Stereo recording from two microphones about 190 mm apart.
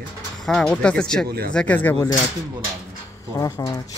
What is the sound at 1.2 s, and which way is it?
Speech, 55° right (ahead or behind).